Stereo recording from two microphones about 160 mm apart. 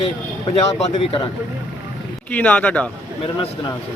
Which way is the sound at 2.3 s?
10° left (ahead or behind).